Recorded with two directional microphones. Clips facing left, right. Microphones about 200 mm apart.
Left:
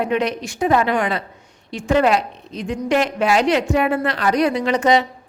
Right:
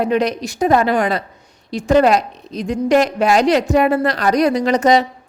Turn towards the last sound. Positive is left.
turn(degrees=-40)  # may be behind; listen again after turning